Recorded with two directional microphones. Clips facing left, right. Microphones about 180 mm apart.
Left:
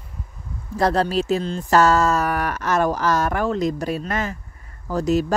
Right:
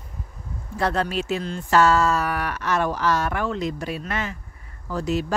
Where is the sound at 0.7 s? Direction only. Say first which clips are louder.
Left 4 dB; 35° left (ahead or behind).